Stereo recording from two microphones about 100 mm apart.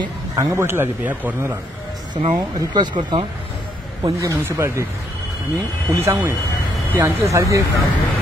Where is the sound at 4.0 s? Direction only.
30° right (ahead or behind).